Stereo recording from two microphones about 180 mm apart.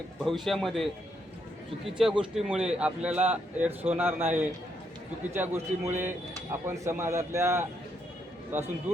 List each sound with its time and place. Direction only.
0.3 s a man's voice: centre (ahead or behind)